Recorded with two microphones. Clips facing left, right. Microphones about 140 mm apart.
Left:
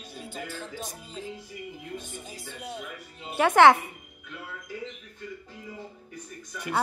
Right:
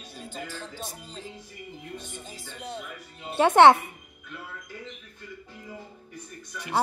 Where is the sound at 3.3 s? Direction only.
25° right (ahead or behind).